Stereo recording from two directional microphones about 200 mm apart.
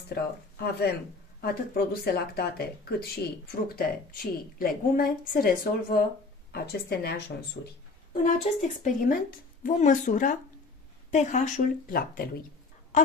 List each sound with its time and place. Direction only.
0.1 s a woman's voice: 55° left (ahead or behind)
8.1 s a woman's voice: 40° left (ahead or behind)